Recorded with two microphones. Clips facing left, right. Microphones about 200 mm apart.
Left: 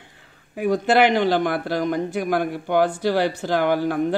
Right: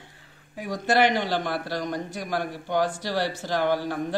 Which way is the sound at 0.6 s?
55° left (ahead or behind).